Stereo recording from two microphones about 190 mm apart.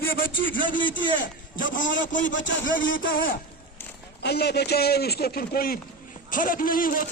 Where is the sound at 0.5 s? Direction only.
45° left (ahead or behind).